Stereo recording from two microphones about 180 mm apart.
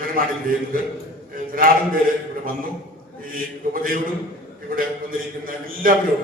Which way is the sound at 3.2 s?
50° right (ahead or behind).